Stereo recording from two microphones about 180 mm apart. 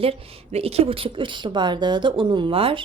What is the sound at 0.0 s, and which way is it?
A woman's voice, 30° right (ahead or behind).